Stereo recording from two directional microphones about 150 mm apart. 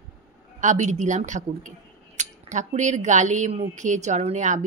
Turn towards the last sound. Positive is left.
turn(degrees=-55)  # may be behind; listen again after turning